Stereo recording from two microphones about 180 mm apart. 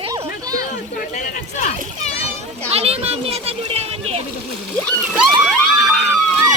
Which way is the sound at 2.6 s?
35° right (ahead or behind).